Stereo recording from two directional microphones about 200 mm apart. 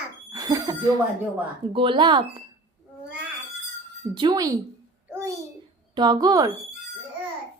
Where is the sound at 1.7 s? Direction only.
25° right (ahead or behind).